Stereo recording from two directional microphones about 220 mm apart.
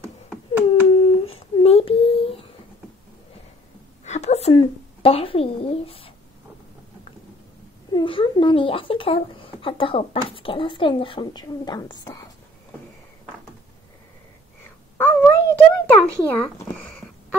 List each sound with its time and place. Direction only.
0.9 s humming: 25° left (ahead or behind)
4.0 s speech: 30° left (ahead or behind)
7.9 s speech: 25° left (ahead or behind)
15.0 s a sound: 10° left (ahead or behind)